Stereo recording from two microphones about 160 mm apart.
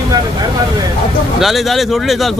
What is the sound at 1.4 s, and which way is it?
Speech, centre (ahead or behind).